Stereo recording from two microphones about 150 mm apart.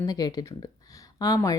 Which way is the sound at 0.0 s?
25° left (ahead or behind).